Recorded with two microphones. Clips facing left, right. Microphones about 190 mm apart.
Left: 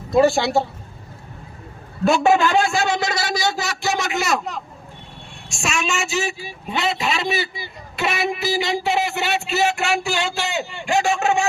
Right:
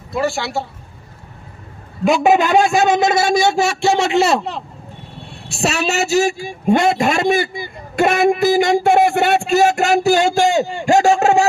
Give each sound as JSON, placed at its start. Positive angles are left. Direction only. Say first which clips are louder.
{"t": 0.1, "sound": "speech", "louder": "left 5 dB", "side_deg": 20}
{"t": 2.0, "sound": "a man's voice", "louder": "right 3 dB", "side_deg": -15}